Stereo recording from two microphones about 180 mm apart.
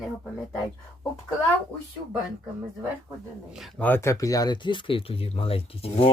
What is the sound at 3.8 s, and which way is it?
Speech, 15° left (ahead or behind).